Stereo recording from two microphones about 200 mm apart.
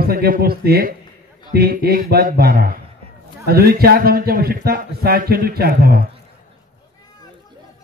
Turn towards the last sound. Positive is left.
turn(degrees=-50)  # may be behind; listen again after turning